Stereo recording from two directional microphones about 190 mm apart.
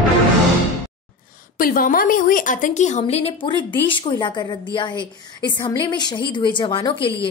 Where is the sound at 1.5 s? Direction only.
45° left (ahead or behind).